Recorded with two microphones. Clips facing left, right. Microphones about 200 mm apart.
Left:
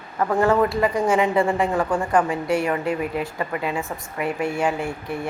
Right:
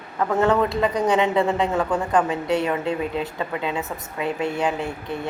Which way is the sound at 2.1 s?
20° right (ahead or behind).